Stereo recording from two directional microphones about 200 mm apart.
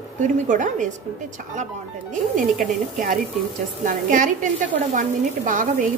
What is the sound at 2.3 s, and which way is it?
A woman's voice, 45° right (ahead or behind).